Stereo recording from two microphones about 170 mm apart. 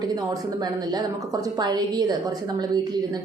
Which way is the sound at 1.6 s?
25° right (ahead or behind).